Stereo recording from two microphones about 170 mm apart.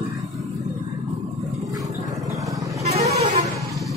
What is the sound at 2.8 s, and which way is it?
Vehicle, 40° right (ahead or behind).